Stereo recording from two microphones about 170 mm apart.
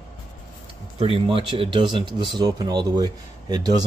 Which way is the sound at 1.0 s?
30° right (ahead or behind).